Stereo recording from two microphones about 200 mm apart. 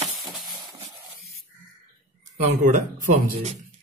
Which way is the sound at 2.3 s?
40° right (ahead or behind).